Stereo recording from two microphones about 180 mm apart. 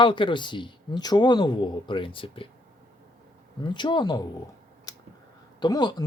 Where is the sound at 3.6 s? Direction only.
25° left (ahead or behind).